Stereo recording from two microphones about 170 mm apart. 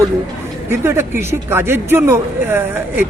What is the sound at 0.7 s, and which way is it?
A man's voice, 15° right (ahead or behind).